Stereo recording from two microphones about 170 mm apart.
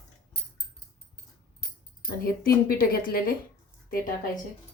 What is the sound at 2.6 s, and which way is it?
Speech, 60° left (ahead or behind).